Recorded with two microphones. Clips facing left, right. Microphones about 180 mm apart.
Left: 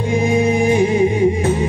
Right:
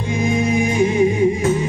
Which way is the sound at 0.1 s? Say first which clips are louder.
Left 2 dB; 30° left (ahead or behind).